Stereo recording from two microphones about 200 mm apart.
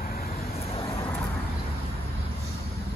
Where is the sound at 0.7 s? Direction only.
30° left (ahead or behind).